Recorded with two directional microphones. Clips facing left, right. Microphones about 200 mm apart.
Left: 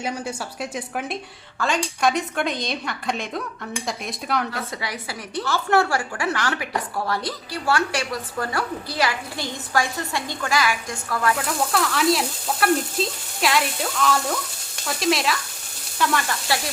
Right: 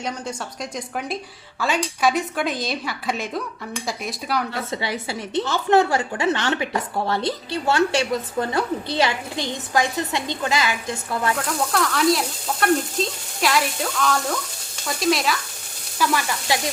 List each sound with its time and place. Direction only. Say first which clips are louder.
0.0 s a woman's voice: left 1 dB; 5° left (ahead or behind)
4.7 s a woman's voice: right 5 dB; 25° right (ahead or behind)
11.3 s a woman's voice: even; centre (ahead or behind)
16.5 s sizzle: right 2 dB; 15° right (ahead or behind)